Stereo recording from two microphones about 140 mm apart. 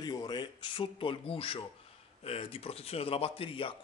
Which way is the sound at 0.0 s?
30° left (ahead or behind).